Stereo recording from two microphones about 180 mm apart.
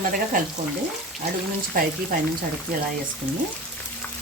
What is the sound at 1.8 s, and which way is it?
Speech, 55° right (ahead or behind).